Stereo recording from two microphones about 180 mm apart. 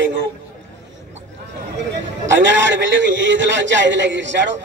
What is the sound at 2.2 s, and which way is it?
A man's voice, 90° right.